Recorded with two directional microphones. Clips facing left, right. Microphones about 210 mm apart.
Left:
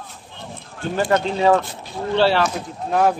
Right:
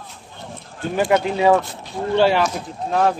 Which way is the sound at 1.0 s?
10° right (ahead or behind).